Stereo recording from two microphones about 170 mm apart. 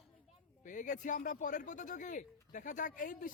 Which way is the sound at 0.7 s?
50° left (ahead or behind).